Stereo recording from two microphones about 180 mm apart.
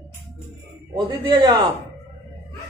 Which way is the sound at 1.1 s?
25° right (ahead or behind).